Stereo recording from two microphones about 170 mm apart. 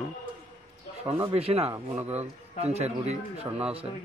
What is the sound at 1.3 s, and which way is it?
Speech, 35° right (ahead or behind).